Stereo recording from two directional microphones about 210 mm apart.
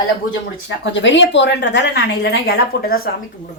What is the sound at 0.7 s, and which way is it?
A woman's voice, 55° left (ahead or behind).